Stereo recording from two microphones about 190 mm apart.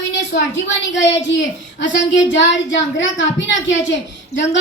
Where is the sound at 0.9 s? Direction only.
75° left (ahead or behind).